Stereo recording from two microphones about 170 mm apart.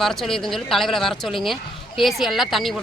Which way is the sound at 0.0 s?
Centre (ahead or behind).